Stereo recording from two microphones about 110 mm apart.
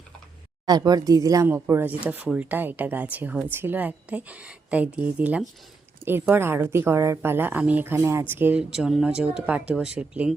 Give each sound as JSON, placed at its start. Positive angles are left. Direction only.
{"t": 0.6, "sound": "speech", "side_deg": -35}
{"t": 8.7, "sound": "speech", "side_deg": -5}